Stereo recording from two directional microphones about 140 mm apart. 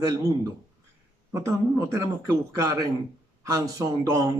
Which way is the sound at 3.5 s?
25° right (ahead or behind).